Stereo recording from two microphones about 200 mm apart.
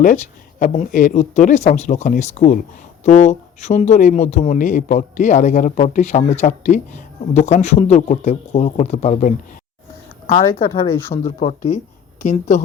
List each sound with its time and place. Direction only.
0.0 s speech: 40° left (ahead or behind)